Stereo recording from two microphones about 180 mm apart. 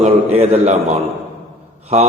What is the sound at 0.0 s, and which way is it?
Speech, 35° right (ahead or behind).